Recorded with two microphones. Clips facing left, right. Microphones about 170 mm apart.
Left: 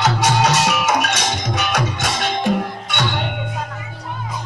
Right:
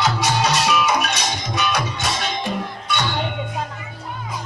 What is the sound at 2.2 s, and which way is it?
Music, 65° left (ahead or behind).